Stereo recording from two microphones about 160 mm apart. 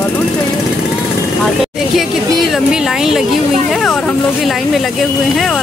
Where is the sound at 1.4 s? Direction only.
Centre (ahead or behind).